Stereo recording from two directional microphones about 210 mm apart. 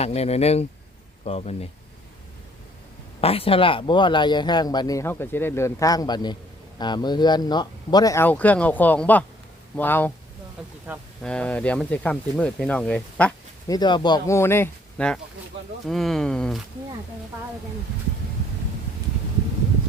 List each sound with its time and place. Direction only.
0.0 s speech: 30° left (ahead or behind)
3.2 s speech: 25° left (ahead or behind); by 10.1 s 10° left (ahead or behind)
10.9 s speech: 10° right (ahead or behind)
11.2 s speech: 5° left (ahead or behind)
13.7 s speech: 20° left (ahead or behind); by 16.6 s 5° left (ahead or behind)